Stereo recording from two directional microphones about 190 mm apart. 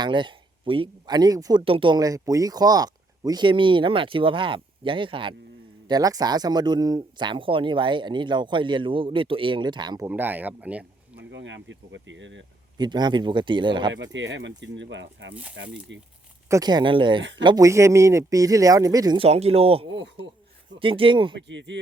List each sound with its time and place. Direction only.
0.0 s speech: 25° right (ahead or behind)
10.1 s speech: 10° right (ahead or behind)
11.2 s speech: 70° right (ahead or behind)
12.7 s speech: 25° right (ahead or behind)
13.9 s speech: 75° right (ahead or behind)
16.5 s speech: 20° right (ahead or behind)
21.3 s speech: 70° right (ahead or behind)